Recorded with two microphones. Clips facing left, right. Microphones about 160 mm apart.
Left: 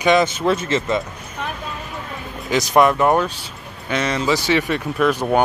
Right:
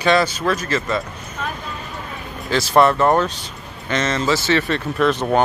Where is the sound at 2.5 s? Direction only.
15° left (ahead or behind).